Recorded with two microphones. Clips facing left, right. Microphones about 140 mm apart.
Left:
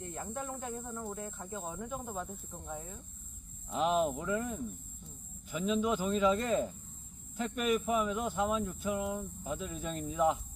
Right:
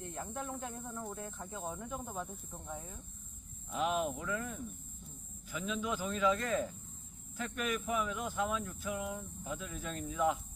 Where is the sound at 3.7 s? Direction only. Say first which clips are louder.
Left 4 dB; 25° left (ahead or behind).